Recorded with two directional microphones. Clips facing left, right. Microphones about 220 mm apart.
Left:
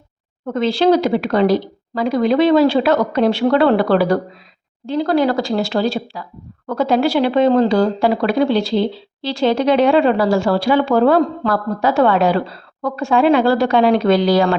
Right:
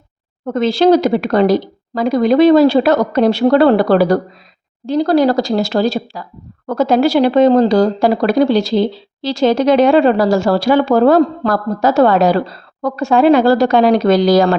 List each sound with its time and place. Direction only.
0.4 s speech: 45° right (ahead or behind)